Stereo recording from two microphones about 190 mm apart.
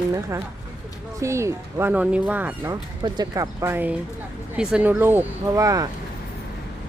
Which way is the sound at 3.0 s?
20° right (ahead or behind).